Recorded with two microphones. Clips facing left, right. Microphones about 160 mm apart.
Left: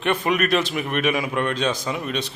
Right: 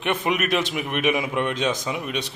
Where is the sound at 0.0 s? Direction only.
15° right (ahead or behind).